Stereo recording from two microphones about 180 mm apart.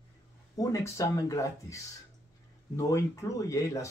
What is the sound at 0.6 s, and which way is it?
Speech, 20° left (ahead or behind).